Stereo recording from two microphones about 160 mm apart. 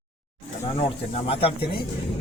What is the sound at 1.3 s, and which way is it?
Speech, 35° left (ahead or behind).